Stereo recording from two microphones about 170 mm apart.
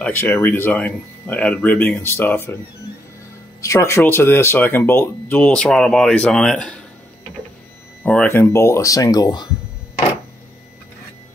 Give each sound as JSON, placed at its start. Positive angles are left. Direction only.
{"t": 0.0, "sound": "speech", "side_deg": 10}
{"t": 3.6, "sound": "speech", "side_deg": 15}
{"t": 8.0, "sound": "speech", "side_deg": 10}